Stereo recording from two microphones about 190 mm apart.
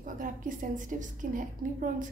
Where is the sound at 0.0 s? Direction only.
45° right (ahead or behind).